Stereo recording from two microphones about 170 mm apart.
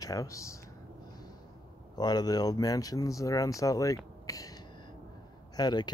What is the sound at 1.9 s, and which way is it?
Speech, 25° left (ahead or behind).